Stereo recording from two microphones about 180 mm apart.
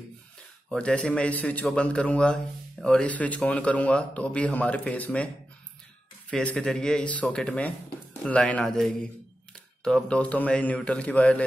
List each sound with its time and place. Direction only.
0.7 s a man's voice: 5° left (ahead or behind)
6.3 s a man's voice: 5° left (ahead or behind)